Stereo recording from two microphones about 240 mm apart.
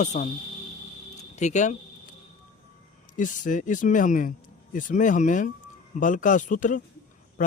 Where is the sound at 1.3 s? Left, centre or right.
Left.